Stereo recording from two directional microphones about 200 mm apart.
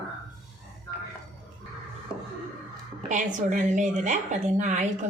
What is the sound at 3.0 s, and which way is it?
A woman's voice, 40° right (ahead or behind).